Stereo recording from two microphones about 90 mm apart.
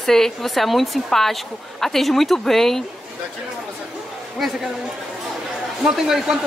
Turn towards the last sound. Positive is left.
turn(degrees=-5)  # may be behind; listen again after turning